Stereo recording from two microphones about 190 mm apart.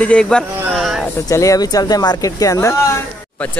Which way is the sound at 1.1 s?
15° left (ahead or behind).